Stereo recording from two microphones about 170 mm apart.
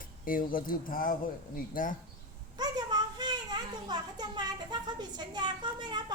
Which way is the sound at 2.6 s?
25° right (ahead or behind).